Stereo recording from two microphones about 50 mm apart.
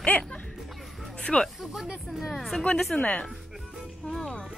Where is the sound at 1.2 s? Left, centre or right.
Centre.